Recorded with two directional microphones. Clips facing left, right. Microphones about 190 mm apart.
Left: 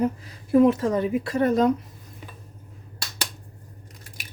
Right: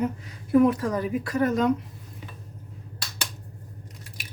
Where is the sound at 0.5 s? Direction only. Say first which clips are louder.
Left 2 dB; 25° left (ahead or behind).